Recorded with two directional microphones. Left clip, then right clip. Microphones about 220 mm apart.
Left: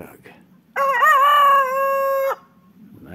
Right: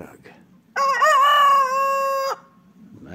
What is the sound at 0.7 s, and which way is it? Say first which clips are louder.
Crowing: left 2 dB; 50° right (ahead or behind).